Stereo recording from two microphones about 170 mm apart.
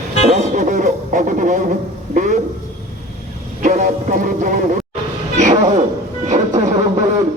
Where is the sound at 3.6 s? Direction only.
50° right (ahead or behind).